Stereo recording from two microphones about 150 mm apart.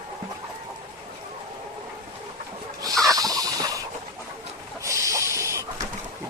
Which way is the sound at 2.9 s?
Centre (ahead or behind).